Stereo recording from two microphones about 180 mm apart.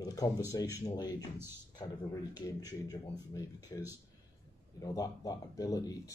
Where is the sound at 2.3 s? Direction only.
20° left (ahead or behind).